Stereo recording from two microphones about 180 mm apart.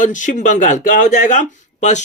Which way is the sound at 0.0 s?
45° left (ahead or behind).